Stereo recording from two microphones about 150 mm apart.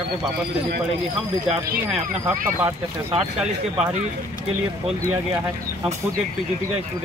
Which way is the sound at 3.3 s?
5° right (ahead or behind).